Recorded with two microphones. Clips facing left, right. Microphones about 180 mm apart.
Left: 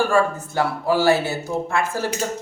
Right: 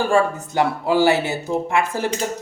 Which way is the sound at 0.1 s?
20° right (ahead or behind).